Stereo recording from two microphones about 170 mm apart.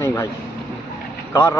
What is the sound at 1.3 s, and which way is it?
Speech, 15° left (ahead or behind).